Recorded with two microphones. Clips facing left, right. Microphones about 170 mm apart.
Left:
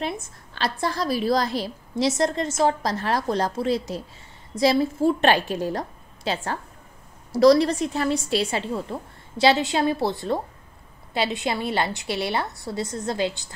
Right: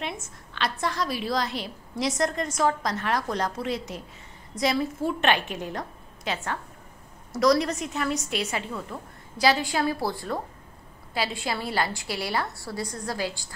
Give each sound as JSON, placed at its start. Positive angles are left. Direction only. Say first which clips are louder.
{"t": 0.6, "sound": "a woman's voice", "louder": "left 2 dB", "side_deg": 35}